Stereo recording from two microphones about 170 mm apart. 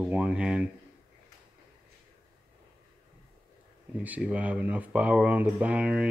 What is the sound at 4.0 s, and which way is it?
Speech, 10° right (ahead or behind).